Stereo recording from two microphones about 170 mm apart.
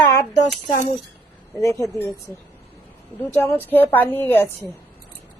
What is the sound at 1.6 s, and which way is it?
Speech, 15° left (ahead or behind).